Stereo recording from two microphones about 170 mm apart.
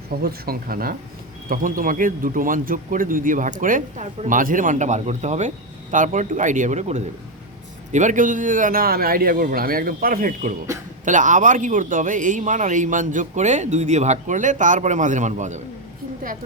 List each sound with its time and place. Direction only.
0.2 s a man's voice: 60° right (ahead or behind); by 15.6 s 45° right (ahead or behind)